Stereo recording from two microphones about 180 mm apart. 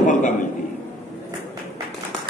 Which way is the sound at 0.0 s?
45° left (ahead or behind).